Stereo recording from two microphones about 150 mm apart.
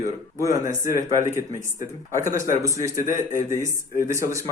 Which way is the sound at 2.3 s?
20° right (ahead or behind).